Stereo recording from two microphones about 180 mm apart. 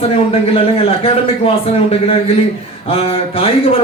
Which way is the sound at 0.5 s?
30° left (ahead or behind).